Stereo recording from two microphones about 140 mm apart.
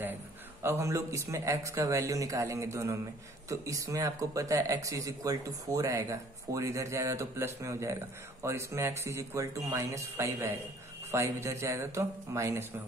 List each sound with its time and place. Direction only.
0.0 s speech: 15° right (ahead or behind)